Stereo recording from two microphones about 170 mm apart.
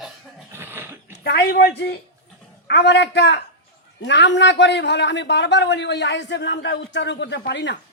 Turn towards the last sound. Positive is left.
turn(degrees=90)